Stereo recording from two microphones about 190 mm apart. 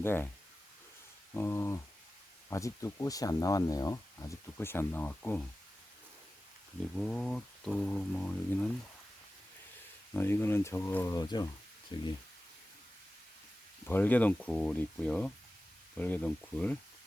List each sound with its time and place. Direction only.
0.0 s speech: 10° left (ahead or behind)
1.3 s speech: 15° left (ahead or behind)
6.9 s speech: 5° left (ahead or behind)
10.2 s speech: 10° left (ahead or behind)
13.8 s speech: 10° left (ahead or behind)